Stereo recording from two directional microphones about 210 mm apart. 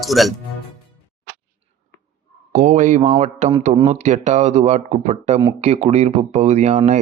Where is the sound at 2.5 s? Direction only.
35° right (ahead or behind).